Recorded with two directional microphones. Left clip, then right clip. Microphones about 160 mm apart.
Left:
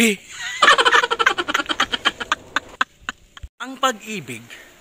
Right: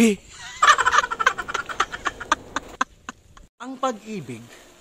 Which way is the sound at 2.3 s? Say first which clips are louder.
Left 2 dB; 10° right (ahead or behind).